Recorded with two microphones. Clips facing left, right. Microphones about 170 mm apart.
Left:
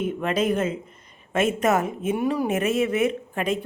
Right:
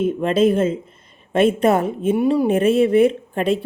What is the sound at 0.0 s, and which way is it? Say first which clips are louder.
A woman's voice: right 7 dB; 25° right (ahead or behind).